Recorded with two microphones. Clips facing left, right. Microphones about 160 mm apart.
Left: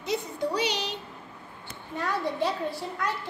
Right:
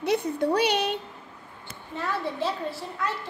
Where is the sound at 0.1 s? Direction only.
60° right (ahead or behind).